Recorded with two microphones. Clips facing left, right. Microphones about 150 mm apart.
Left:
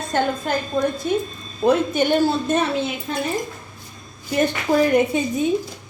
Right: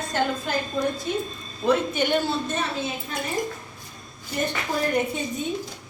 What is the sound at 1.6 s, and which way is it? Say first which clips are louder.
Speech: left 5 dB; 45° left (ahead or behind).